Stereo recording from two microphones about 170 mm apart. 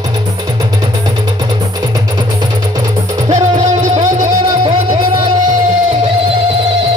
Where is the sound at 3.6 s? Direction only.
45° right (ahead or behind).